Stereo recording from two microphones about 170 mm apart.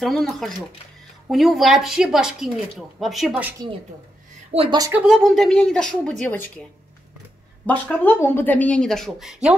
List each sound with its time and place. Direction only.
0.0 s speech: centre (ahead or behind)
4.5 s speech: 35° right (ahead or behind)
4.9 s speech: 5° right (ahead or behind)
7.6 s speech: 10° left (ahead or behind)